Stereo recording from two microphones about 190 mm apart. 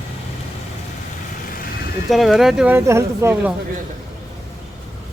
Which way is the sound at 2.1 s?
Centre (ahead or behind).